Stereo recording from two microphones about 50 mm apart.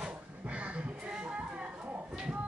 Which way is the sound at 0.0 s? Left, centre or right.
Right.